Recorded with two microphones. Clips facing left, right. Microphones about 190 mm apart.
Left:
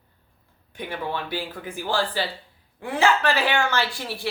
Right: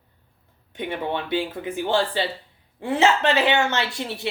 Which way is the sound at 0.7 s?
25° right (ahead or behind).